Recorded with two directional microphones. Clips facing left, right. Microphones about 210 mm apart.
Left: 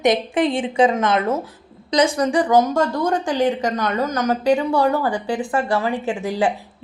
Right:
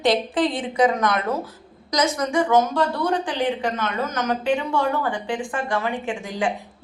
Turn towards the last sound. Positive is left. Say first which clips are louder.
# left 5 dB
turn(degrees=35)  # may be behind; listen again after turning